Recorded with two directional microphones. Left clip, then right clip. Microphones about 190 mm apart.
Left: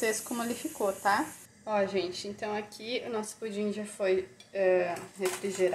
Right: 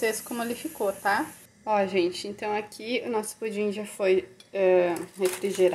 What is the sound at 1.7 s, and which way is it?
A woman's voice, 35° right (ahead or behind).